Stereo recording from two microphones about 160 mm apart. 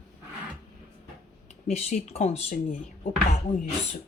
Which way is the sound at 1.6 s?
45° left (ahead or behind).